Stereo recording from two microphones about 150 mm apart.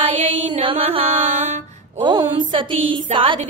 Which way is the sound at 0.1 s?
35° right (ahead or behind).